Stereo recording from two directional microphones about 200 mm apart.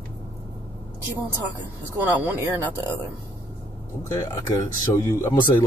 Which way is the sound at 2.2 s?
10° right (ahead or behind).